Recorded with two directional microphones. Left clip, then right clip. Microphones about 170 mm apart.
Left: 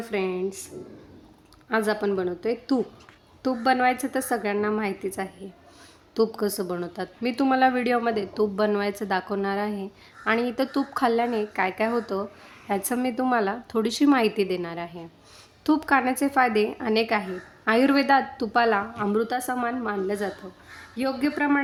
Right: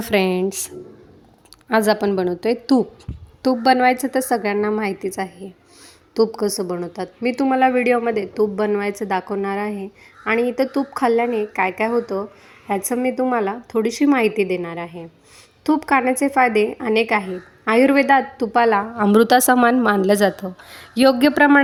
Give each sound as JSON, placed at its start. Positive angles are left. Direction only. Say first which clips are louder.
{"t": 0.0, "sound": "a woman's voice", "louder": "right 9 dB", "side_deg": -55}
{"t": 1.7, "sound": "a woman's voice", "louder": "right 7 dB", "side_deg": -40}
{"t": 18.9, "sound": "a woman's voice", "louder": "right 11 dB", "side_deg": -60}